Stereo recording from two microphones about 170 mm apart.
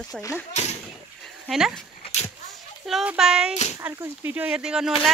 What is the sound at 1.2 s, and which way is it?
Dog, centre (ahead or behind).